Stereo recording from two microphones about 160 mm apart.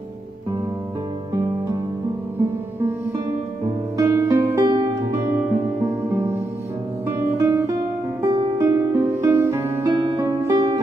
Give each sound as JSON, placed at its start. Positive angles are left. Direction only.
{"t": 3.6, "sound": "music", "side_deg": -20}
{"t": 5.9, "sound": "music", "side_deg": -20}
{"t": 7.1, "sound": "guitar", "side_deg": -20}
{"t": 8.2, "sound": "music", "side_deg": -20}